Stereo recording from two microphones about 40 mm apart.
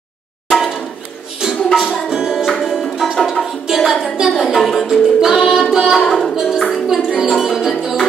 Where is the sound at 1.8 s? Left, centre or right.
Centre.